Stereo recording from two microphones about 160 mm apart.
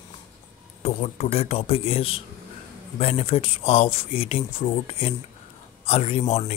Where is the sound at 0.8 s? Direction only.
40° left (ahead or behind).